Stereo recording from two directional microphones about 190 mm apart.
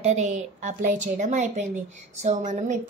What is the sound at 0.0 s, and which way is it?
A woman's voice, 40° right (ahead or behind).